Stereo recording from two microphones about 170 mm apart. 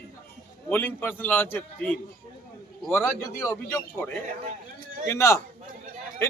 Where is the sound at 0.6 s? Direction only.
10° left (ahead or behind).